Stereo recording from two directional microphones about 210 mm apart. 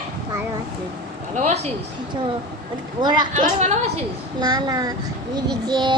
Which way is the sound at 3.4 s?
35° right (ahead or behind).